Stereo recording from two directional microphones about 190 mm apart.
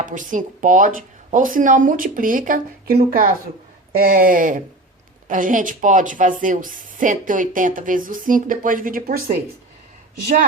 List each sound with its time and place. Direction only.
0.0 s speech: 45° right (ahead or behind)